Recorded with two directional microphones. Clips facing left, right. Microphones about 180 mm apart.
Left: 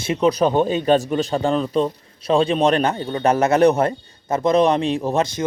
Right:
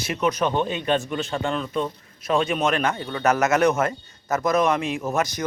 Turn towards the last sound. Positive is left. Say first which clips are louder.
# left 4 dB
turn(degrees=30)  # may be behind; listen again after turning